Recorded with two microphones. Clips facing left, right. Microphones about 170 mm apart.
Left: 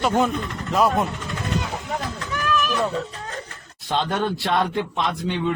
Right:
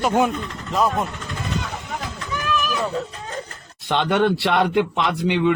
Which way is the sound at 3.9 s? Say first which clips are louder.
Right 4 dB; 70° right (ahead or behind).